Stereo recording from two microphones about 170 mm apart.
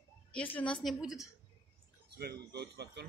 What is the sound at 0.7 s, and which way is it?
Speech, centre (ahead or behind).